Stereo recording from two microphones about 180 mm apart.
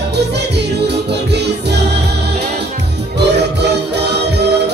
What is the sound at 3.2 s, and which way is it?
Music, 70° right (ahead or behind).